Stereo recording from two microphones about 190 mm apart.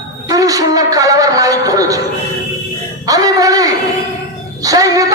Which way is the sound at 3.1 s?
20° right (ahead or behind).